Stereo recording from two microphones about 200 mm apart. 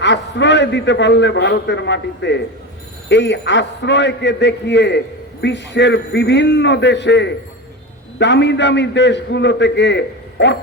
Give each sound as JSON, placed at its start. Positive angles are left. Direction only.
{"t": 0.0, "sound": "a man's voice", "side_deg": 60}